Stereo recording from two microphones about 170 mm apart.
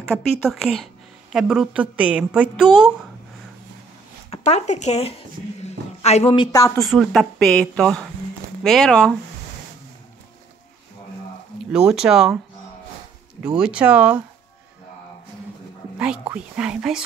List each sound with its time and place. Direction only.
0.5 s a woman's voice: centre (ahead or behind)
4.3 s speech: 40° left (ahead or behind)
5.6 s a sound: 40° left (ahead or behind)
6.4 s speech: 20° left (ahead or behind)
6.8 s a woman's voice: centre (ahead or behind)
11.9 s a woman's voice: 5° right (ahead or behind)
13.6 s speech: 5° right (ahead or behind)
16.0 s a woman's voice: 5° right (ahead or behind)